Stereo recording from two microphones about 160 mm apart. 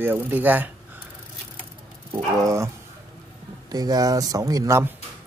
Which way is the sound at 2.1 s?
20° right (ahead or behind).